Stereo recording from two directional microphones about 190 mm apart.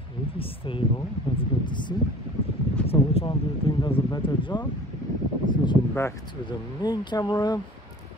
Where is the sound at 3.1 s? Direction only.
30° left (ahead or behind).